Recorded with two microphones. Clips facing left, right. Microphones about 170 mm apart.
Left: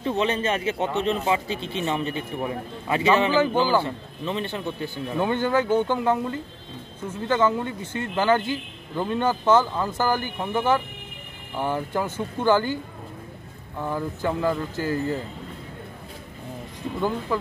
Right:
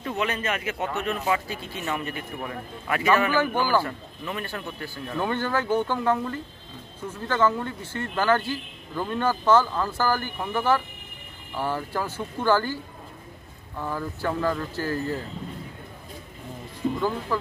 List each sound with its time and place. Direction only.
0.0 s speech: 25° left (ahead or behind)
13.7 s speech: 15° left (ahead or behind)
17.3 s speech: 15° left (ahead or behind)